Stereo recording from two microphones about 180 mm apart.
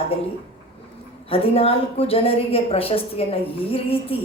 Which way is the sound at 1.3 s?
30° left (ahead or behind).